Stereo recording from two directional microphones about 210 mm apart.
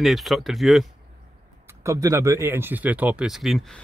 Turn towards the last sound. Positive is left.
turn(degrees=0)  # may be behind; listen again after turning